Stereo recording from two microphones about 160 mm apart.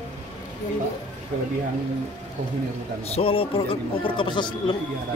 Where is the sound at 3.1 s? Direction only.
35° left (ahead or behind).